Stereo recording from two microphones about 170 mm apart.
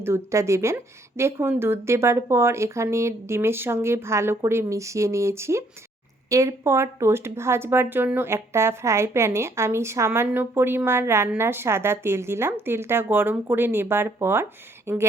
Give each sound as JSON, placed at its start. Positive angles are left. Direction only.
{"t": 0.0, "sound": "speech", "side_deg": -15}